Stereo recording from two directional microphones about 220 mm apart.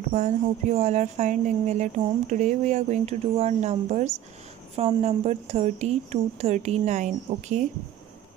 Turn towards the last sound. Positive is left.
turn(degrees=-35)  # may be behind; listen again after turning